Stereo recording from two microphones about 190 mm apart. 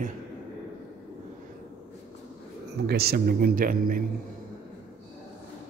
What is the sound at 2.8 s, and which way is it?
A man's voice, 55° right (ahead or behind).